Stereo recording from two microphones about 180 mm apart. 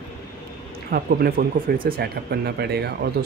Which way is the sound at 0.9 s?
55° right (ahead or behind).